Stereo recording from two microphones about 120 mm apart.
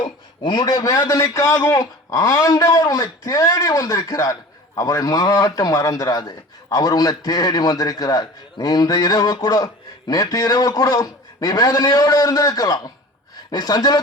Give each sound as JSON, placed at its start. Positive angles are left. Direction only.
{"t": 0.0, "sound": "a man's voice", "side_deg": 40}